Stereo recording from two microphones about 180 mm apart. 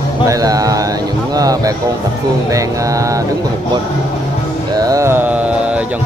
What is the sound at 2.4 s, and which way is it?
Music, 20° right (ahead or behind).